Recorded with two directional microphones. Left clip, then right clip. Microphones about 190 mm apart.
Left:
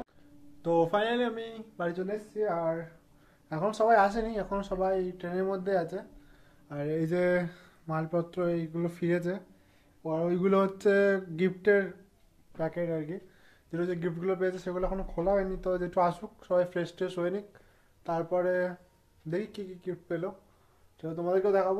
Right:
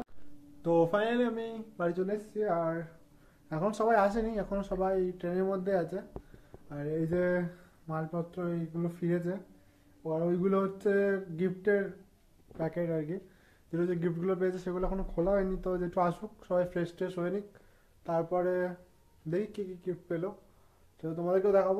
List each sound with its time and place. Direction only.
0.6 s a man's voice: centre (ahead or behind)
6.9 s speech: 50° left (ahead or behind)
12.6 s a man's voice: centre (ahead or behind)